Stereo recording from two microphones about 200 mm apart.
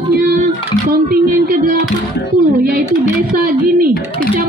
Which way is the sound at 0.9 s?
45° right (ahead or behind).